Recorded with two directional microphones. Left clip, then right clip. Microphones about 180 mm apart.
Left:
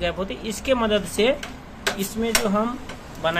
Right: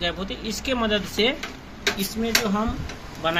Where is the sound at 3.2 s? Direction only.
5° right (ahead or behind).